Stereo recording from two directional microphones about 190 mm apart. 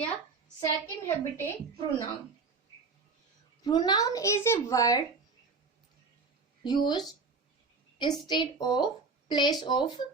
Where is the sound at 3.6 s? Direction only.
20° left (ahead or behind).